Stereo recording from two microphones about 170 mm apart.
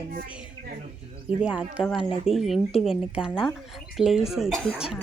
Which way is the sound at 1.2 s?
5° right (ahead or behind).